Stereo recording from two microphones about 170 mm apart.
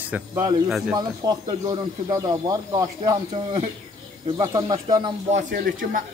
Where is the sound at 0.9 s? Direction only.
25° right (ahead or behind).